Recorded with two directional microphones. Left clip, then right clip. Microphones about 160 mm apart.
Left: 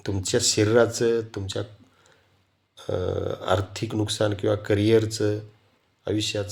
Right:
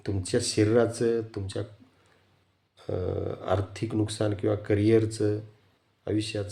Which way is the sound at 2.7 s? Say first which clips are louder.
Left 4 dB; 15° right (ahead or behind).